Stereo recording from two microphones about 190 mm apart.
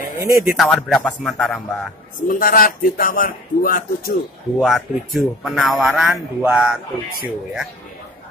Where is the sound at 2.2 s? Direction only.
50° left (ahead or behind).